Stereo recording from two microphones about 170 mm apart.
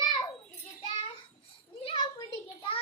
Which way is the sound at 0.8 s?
30° left (ahead or behind).